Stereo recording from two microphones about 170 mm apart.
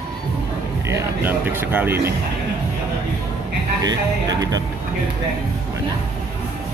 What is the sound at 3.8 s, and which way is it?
Speech, 20° right (ahead or behind).